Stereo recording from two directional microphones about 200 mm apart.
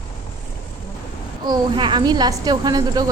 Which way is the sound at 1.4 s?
25° right (ahead or behind).